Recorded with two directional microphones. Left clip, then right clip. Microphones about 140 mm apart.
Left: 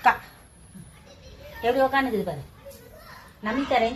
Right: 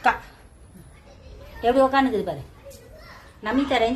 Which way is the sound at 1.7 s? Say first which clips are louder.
Right 4 dB; 15° right (ahead or behind).